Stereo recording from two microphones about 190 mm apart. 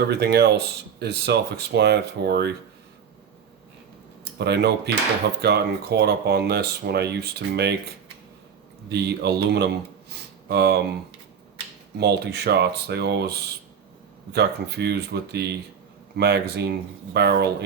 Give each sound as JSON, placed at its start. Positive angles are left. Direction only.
{"t": 0.1, "sound": "speech", "side_deg": -60}
{"t": 4.4, "sound": "speech", "side_deg": -60}
{"t": 8.9, "sound": "speech", "side_deg": -60}
{"t": 10.1, "sound": "a sound", "side_deg": -60}
{"t": 11.9, "sound": "speech", "side_deg": -60}
{"t": 14.3, "sound": "speech", "side_deg": -60}